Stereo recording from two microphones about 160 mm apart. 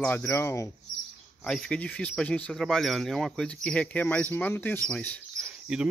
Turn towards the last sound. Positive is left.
turn(degrees=-5)  # may be behind; listen again after turning